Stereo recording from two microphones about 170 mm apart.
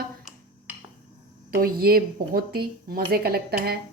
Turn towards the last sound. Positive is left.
turn(degrees=-65)  # may be behind; listen again after turning